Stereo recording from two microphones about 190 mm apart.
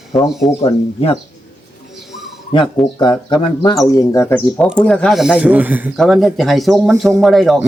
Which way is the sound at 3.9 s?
15° left (ahead or behind).